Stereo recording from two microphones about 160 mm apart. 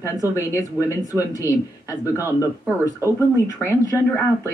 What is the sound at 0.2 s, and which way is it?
Speech, 20° left (ahead or behind).